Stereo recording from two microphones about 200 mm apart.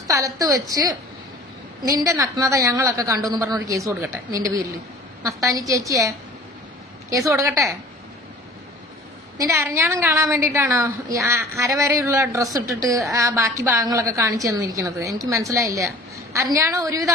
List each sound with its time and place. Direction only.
0.0 s a woman's voice: 15° right (ahead or behind)
7.2 s a woman's voice: 15° right (ahead or behind)
9.4 s a woman's voice: 15° right (ahead or behind)